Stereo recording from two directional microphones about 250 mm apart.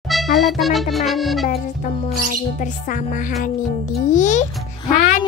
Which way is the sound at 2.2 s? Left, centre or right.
Left.